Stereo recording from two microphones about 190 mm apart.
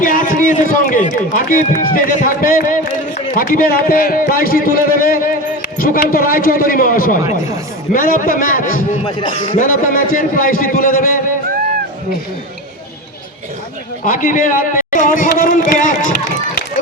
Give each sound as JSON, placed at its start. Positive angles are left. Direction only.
{"t": 0.0, "sound": "speech", "side_deg": 45}
{"t": 9.0, "sound": "speech", "side_deg": 25}
{"t": 9.6, "sound": "speech", "side_deg": 45}
{"t": 14.0, "sound": "speech", "side_deg": 45}